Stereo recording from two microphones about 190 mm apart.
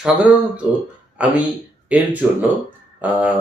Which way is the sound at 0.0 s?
5° right (ahead or behind).